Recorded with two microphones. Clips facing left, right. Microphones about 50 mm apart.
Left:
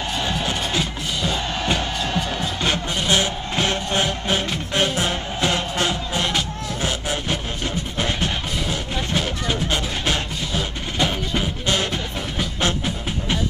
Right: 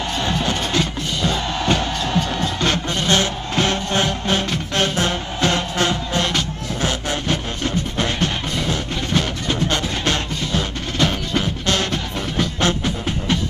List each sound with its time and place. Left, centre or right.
0.2 s music: centre